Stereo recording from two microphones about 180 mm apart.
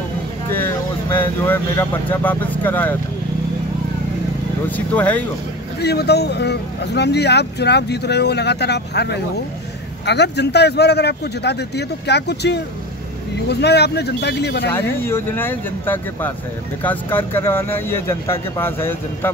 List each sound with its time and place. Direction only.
0.5 s speech: 10° left (ahead or behind)
4.6 s speech: 10° left (ahead or behind)
5.8 s speech: 65° left (ahead or behind)
15.0 s speech: 15° left (ahead or behind)